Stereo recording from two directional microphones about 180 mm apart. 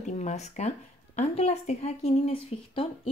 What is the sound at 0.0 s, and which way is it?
A woman's voice, 40° left (ahead or behind).